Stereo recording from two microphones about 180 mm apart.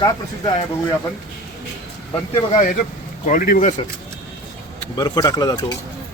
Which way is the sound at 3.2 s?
50° left (ahead or behind).